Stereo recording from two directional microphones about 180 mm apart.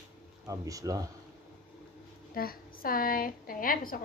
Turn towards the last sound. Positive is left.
turn(degrees=50)  # may be behind; listen again after turning